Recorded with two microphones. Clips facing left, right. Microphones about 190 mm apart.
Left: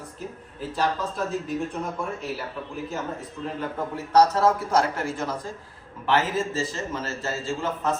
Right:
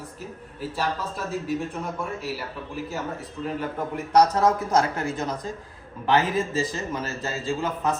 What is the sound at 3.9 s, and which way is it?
A man's voice, 15° right (ahead or behind).